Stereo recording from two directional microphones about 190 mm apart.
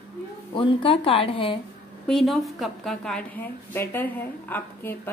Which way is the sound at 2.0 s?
Centre (ahead or behind).